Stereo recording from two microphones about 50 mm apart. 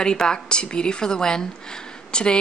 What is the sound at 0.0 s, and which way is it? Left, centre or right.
Speech, centre.